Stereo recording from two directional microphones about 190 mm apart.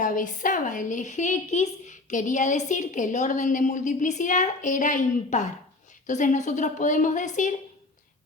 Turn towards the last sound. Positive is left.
turn(degrees=40)  # may be behind; listen again after turning